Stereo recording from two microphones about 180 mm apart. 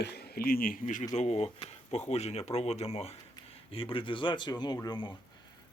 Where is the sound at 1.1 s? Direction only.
40° left (ahead or behind).